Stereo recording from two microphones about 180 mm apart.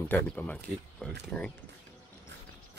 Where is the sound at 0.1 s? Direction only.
10° left (ahead or behind).